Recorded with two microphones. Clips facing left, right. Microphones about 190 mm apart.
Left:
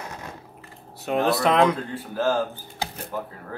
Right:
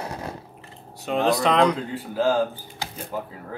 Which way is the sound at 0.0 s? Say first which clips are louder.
Right 5 dB; 35° right (ahead or behind).